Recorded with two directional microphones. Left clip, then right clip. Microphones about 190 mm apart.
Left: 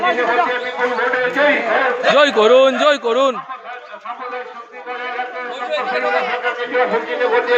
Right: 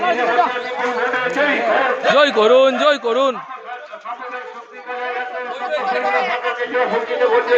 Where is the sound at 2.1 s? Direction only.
5° left (ahead or behind).